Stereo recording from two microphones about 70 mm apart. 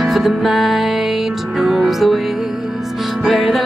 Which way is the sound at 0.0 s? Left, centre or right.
Centre.